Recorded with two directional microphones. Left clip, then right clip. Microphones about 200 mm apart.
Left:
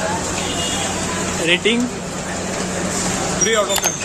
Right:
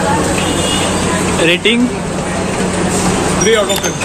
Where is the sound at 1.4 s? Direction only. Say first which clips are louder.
Right 4 dB; centre (ahead or behind).